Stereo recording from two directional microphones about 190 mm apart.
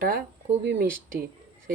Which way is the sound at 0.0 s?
50° right (ahead or behind).